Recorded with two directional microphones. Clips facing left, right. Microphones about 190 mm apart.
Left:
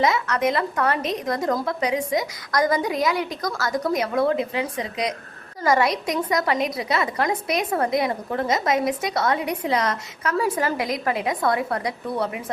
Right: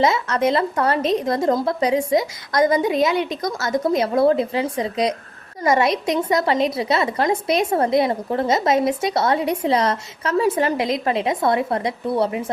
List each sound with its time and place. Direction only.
0.0 s a woman's voice: 30° right (ahead or behind)